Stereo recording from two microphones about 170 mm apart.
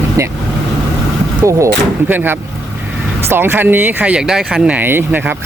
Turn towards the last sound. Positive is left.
turn(degrees=-10)  # may be behind; listen again after turning